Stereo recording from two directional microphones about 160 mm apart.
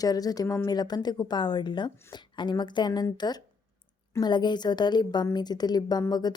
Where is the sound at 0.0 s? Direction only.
25° left (ahead or behind).